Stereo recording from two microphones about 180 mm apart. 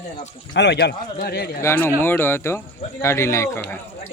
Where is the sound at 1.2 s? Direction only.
60° left (ahead or behind).